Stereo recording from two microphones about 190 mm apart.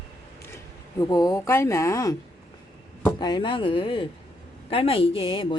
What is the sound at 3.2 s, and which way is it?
A woman's voice, 25° left (ahead or behind).